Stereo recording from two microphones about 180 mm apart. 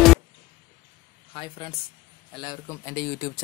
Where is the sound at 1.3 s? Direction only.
30° left (ahead or behind).